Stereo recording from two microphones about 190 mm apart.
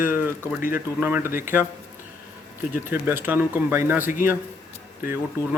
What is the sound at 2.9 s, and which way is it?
Speech, 10° right (ahead or behind).